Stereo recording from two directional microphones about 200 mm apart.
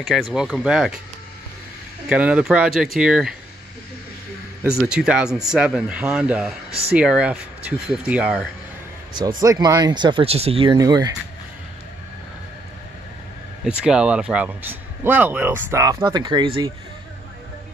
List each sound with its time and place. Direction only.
0.0 s speech: centre (ahead or behind)
2.0 s speech: 5° right (ahead or behind)
4.7 s speech: 5° right (ahead or behind)
6.7 s speech: 55° right (ahead or behind)
7.0 s speech: 5° right (ahead or behind)
9.4 s speech: 20° right (ahead or behind)
13.7 s speech: 5° right (ahead or behind); by 16.7 s 25° right (ahead or behind)